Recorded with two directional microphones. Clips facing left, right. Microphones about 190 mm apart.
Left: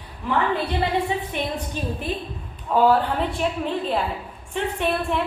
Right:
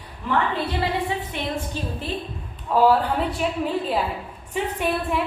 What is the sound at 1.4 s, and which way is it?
Speech, 20° left (ahead or behind).